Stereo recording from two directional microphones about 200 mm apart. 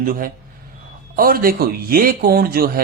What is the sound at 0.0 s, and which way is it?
Speech, 45° right (ahead or behind).